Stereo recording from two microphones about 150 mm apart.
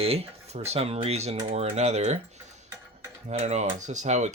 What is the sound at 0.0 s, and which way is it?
Speech, 40° right (ahead or behind).